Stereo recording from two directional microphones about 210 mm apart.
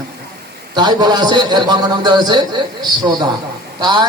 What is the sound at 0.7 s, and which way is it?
A man's voice, 20° right (ahead or behind).